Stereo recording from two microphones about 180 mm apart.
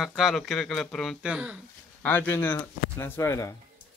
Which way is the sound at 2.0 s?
10° left (ahead or behind).